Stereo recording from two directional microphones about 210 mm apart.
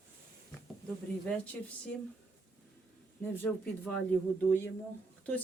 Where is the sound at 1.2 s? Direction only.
5° left (ahead or behind).